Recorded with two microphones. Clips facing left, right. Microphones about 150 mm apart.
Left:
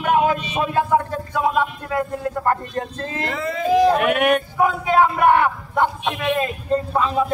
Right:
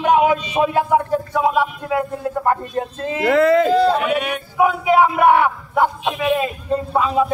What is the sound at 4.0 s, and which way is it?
Yodeling, 55° left (ahead or behind).